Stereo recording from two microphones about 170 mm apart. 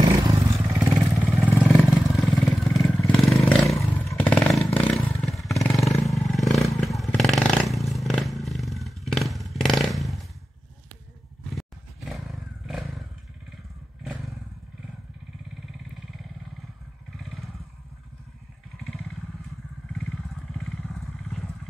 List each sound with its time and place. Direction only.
0.1 s vehicle: 25° right (ahead or behind)
0.7 s vehicle: 5° right (ahead or behind)
3.2 s a sound: centre (ahead or behind)
4.2 s motorcycle: 5° left (ahead or behind)
4.7 s vehicle: 5° left (ahead or behind)
11.5 s a sound: centre (ahead or behind)
14.0 s motorcycle: centre (ahead or behind)
17.2 s vehicle: centre (ahead or behind)
20.5 s vehicle: centre (ahead or behind)